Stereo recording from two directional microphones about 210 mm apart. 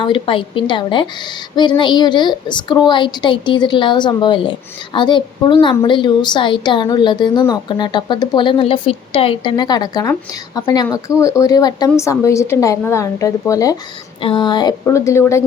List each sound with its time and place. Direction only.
0.0 s a woman's voice: 25° left (ahead or behind)